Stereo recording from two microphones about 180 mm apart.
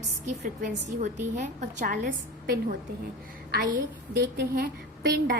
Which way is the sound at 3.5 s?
60° right (ahead or behind).